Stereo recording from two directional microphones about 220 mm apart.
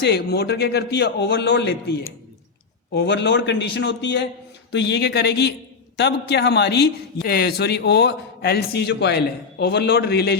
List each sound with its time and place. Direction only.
0.0 s a man's voice: 45° left (ahead or behind)